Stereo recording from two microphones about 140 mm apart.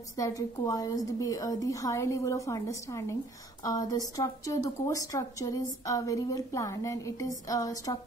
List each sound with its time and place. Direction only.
0.2 s a woman's voice: 25° left (ahead or behind)